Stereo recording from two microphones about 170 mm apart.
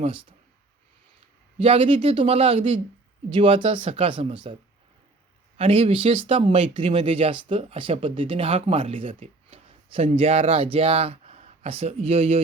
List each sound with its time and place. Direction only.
0.0 s speech: 30° right (ahead or behind)
1.5 s speech: 35° right (ahead or behind)
3.2 s speech: 30° right (ahead or behind)
5.5 s speech: 40° right (ahead or behind)